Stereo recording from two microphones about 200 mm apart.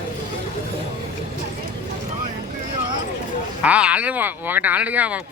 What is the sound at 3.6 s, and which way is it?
Speech, 5° right (ahead or behind).